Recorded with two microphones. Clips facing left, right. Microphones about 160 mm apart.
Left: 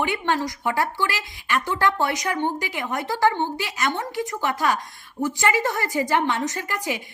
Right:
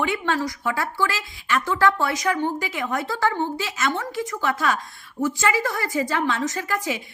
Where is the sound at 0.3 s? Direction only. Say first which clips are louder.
Even; 15° left (ahead or behind).